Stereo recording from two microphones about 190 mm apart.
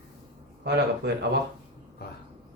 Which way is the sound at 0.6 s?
65° right (ahead or behind).